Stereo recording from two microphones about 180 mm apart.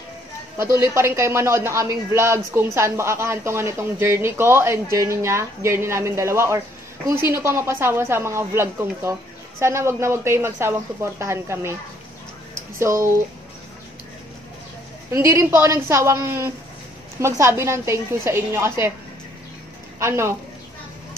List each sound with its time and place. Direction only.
0.9 s speech: 15° right (ahead or behind)
12.7 s speech: 15° right (ahead or behind)
15.1 s speech: 15° right (ahead or behind)
20.0 s speech: 15° right (ahead or behind)